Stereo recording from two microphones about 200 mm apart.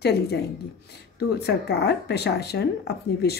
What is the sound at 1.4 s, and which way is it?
Speech, 55° left (ahead or behind).